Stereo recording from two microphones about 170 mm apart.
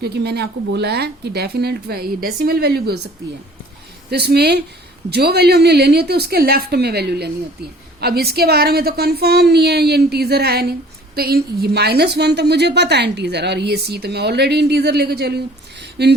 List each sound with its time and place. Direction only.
0.0 s a woman's voice: 75° right (ahead or behind)
4.1 s a woman's voice: 70° right (ahead or behind)